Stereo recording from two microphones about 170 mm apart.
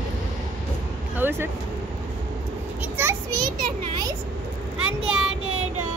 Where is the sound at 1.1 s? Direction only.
15° right (ahead or behind).